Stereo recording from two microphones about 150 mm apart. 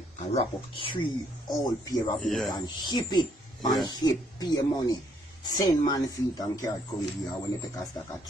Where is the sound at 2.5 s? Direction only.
30° left (ahead or behind).